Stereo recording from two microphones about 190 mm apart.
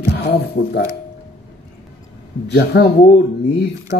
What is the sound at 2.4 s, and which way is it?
Speech, 65° left (ahead or behind).